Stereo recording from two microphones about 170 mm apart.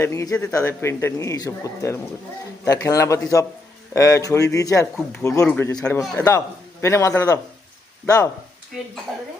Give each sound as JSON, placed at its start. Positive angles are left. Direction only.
{"t": 0.0, "sound": "speech", "side_deg": 15}